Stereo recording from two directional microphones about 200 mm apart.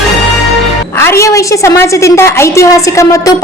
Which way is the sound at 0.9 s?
10° left (ahead or behind).